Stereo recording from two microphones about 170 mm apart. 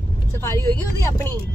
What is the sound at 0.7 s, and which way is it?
Speech, 15° left (ahead or behind).